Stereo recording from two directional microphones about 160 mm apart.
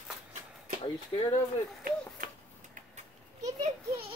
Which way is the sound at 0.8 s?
35° left (ahead or behind).